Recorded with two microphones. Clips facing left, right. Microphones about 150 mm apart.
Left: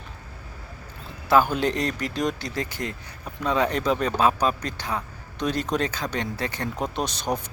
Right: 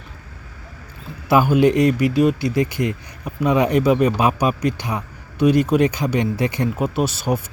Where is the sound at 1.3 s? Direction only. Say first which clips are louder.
Right 6 dB; 10° right (ahead or behind).